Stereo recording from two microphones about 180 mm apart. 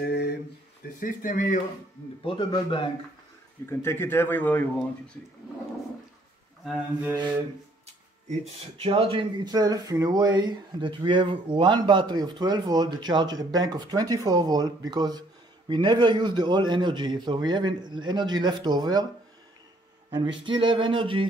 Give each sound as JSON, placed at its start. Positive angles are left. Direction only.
{"t": 0.0, "sound": "a sound", "side_deg": 60}
{"t": 0.9, "sound": "speech", "side_deg": 50}
{"t": 2.2, "sound": "speech", "side_deg": 25}
{"t": 3.6, "sound": "speech", "side_deg": 15}
{"t": 6.6, "sound": "mantra", "side_deg": 0}
{"t": 7.8, "sound": "speech", "side_deg": -35}
{"t": 20.4, "sound": "speech", "side_deg": -30}